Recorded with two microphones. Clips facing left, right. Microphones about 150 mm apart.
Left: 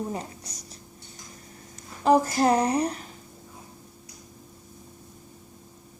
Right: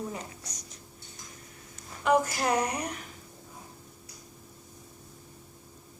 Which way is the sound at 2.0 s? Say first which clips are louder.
Left 5 dB; 35° left (ahead or behind).